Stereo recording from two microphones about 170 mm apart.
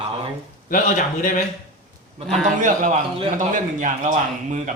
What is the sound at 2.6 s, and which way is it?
A man's voice, 50° right (ahead or behind).